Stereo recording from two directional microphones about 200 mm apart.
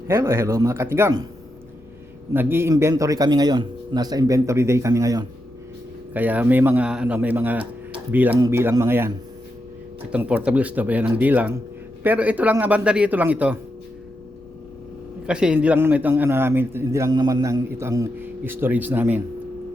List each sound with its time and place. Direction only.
0.1 s a man's voice: 15° right (ahead or behind)
2.3 s a man's voice: 10° right (ahead or behind)
15.3 s a man's voice: 5° right (ahead or behind)